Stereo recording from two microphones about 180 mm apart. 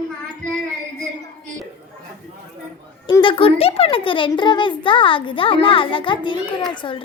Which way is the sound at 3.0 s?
25° left (ahead or behind).